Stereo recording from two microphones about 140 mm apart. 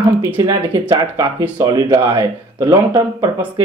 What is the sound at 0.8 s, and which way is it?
Speech, 15° right (ahead or behind).